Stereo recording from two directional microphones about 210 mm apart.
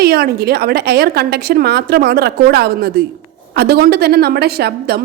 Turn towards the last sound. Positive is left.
turn(degrees=-50)  # may be behind; listen again after turning